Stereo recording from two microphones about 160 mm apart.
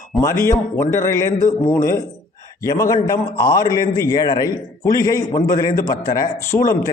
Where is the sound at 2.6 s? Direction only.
20° left (ahead or behind).